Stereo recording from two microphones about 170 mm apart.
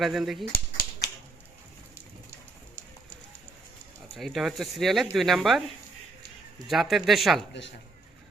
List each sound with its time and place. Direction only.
0.0 s speech: centre (ahead or behind)
0.5 s finger snapping: 60° left (ahead or behind)
4.1 s speech: centre (ahead or behind)
6.7 s speech: centre (ahead or behind)